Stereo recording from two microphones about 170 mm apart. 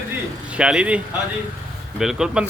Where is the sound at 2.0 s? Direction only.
5° right (ahead or behind).